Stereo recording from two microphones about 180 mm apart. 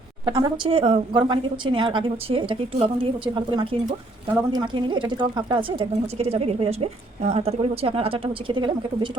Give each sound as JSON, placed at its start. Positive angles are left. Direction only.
{"t": 0.3, "sound": "a woman's voice", "side_deg": -25}